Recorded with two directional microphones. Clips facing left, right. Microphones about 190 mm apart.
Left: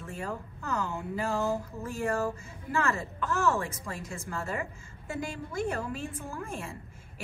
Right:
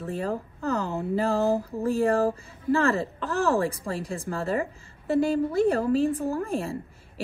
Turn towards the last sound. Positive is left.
turn(degrees=-35)  # may be behind; listen again after turning